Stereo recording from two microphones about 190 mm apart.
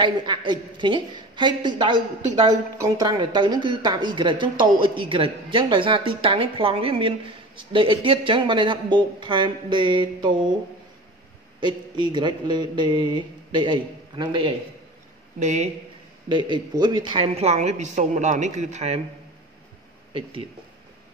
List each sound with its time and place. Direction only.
0.0 s a woman's voice: 25° right (ahead or behind)
11.6 s a woman's voice: 25° right (ahead or behind)
15.3 s a woman's voice: 40° right (ahead or behind)
16.3 s a woman's voice: 25° right (ahead or behind)